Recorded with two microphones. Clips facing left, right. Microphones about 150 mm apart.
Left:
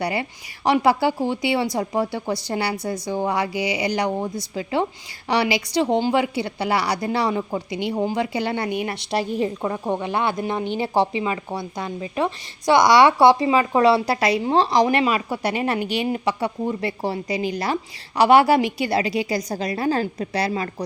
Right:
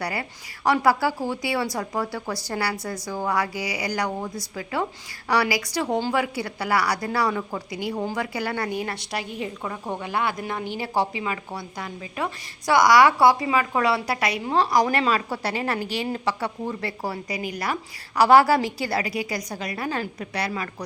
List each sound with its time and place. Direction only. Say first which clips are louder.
0.0 s a woman's voice: left 5 dB; 25° left (ahead or behind)
9.3 s a woman's voice: left 8 dB; 35° left (ahead or behind)